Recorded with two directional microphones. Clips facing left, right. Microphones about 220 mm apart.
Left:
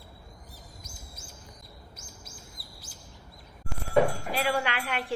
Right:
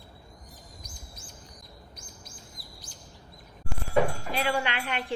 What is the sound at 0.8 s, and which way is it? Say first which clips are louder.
Chirp: even; 25° left (ahead or behind).